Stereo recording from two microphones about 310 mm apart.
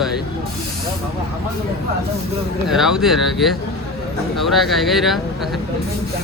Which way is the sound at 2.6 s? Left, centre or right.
Centre.